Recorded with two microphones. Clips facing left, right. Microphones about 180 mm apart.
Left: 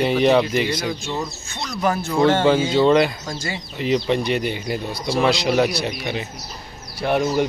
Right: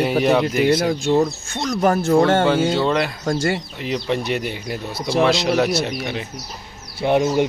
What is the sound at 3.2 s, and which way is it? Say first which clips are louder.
Speech: right 8 dB; 55° right (ahead or behind).